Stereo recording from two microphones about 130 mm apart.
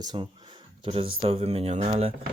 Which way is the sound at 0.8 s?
45° right (ahead or behind).